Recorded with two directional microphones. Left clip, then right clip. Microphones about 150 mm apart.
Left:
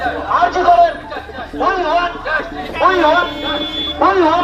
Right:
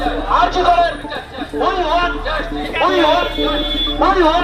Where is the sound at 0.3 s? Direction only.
20° right (ahead or behind).